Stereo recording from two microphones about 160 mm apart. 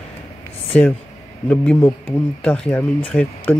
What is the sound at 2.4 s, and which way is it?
Speech, 10° left (ahead or behind).